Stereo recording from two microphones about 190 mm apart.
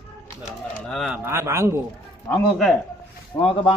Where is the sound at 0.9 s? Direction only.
Centre (ahead or behind).